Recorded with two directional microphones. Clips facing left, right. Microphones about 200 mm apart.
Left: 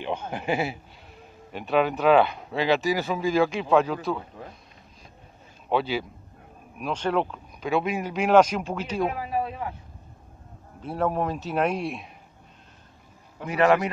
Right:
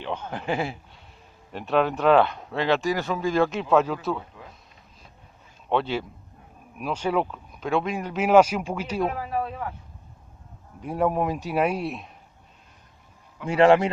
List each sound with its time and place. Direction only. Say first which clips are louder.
0.0 s a man's voice: left 1 dB; 15° left (ahead or behind)
5.7 s speech: even; 5° left (ahead or behind)
6.8 s speech: even; 10° right (ahead or behind)
8.2 s speech: right 1 dB; 10° right (ahead or behind)
9.0 s speech: left 1 dB; 10° left (ahead or behind)
10.8 s speech: right 2 dB; 10° right (ahead or behind)
13.5 s a man's voice: right 4 dB; 30° right (ahead or behind)